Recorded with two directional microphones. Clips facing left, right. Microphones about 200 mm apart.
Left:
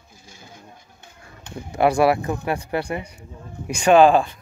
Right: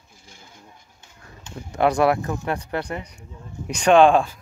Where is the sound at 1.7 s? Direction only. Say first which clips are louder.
Left 1 dB; 10° left (ahead or behind).